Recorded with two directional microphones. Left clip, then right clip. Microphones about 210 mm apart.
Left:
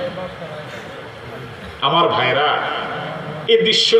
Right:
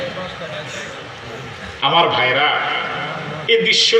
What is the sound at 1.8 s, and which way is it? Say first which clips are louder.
Speech: right 1 dB; 60° left (ahead or behind).